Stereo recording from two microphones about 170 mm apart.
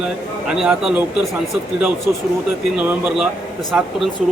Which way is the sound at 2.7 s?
10° right (ahead or behind).